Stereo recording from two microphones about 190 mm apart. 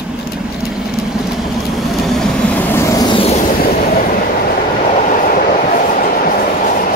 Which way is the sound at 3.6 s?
50° left (ahead or behind).